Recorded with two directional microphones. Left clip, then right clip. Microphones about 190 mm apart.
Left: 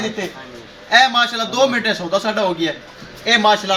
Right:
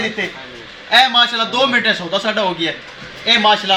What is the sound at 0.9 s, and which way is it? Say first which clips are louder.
A man's voice: right 1 dB; centre (ahead or behind).